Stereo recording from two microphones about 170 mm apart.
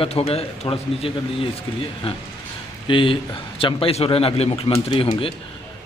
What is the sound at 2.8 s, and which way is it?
A man's voice, 30° left (ahead or behind).